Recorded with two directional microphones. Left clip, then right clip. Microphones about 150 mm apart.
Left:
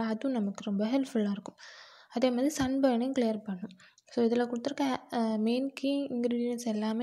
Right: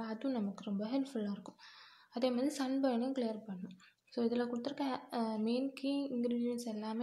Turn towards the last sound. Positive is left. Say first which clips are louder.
# left 7 dB
turn(degrees=45)  # may be behind; listen again after turning